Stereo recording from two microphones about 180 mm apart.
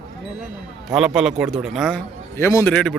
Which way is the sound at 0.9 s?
5° right (ahead or behind).